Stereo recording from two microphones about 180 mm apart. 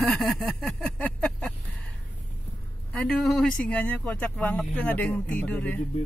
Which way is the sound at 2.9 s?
5° left (ahead or behind).